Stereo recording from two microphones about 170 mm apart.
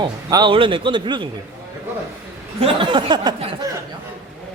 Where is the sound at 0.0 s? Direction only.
25° right (ahead or behind).